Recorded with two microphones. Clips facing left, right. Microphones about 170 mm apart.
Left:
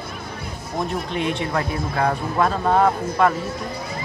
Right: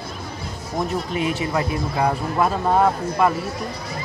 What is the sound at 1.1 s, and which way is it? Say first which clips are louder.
Speech: right 1 dB; 5° right (ahead or behind).